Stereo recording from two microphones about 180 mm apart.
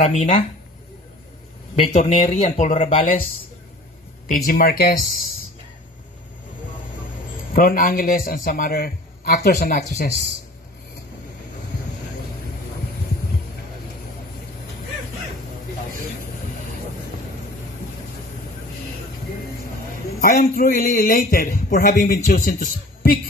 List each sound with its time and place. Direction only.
0.0 s speech: 40° left (ahead or behind)
1.8 s speech: 40° left (ahead or behind)
4.5 s speech: 55° left (ahead or behind)
7.5 s a man's voice: 50° left (ahead or behind)
20.2 s a man's voice: 55° left (ahead or behind)